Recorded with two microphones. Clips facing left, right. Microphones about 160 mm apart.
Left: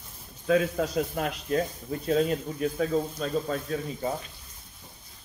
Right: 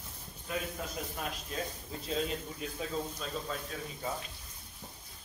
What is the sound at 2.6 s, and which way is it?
Speech, 55° left (ahead or behind).